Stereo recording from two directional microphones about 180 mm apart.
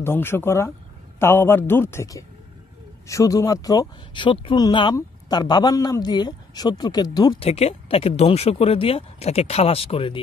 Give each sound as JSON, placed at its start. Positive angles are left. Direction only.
{"t": 0.0, "sound": "a man's voice", "side_deg": 15}